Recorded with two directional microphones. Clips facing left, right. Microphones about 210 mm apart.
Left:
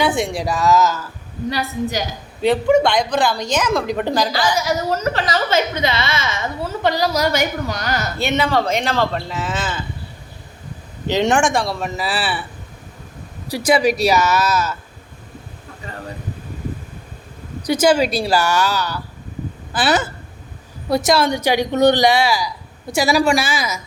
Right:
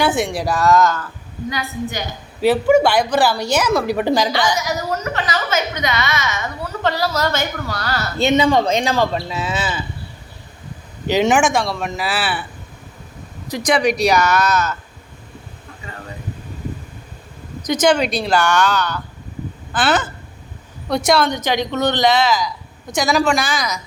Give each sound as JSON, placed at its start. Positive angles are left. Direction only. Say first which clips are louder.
{"t": 0.0, "sound": "a man's voice", "louder": "right 1 dB", "side_deg": 0}
{"t": 1.5, "sound": "a woman's voice", "louder": "left 3 dB", "side_deg": 35}
{"t": 2.4, "sound": "a woman's voice", "louder": "right 1 dB", "side_deg": -5}
{"t": 4.5, "sound": "a woman's voice", "louder": "left 2 dB", "side_deg": 30}
{"t": 6.8, "sound": "a woman's voice", "louder": "left 2 dB", "side_deg": 15}
{"t": 8.2, "sound": "a woman's voice", "louder": "right 5 dB", "side_deg": -15}
{"t": 11.1, "sound": "a man's voice", "louder": "right 1 dB", "side_deg": -5}
{"t": 13.5, "sound": "a man's voice", "louder": "left 1 dB", "side_deg": 5}
{"t": 17.7, "sound": "a woman's voice", "louder": "left 1 dB", "side_deg": 5}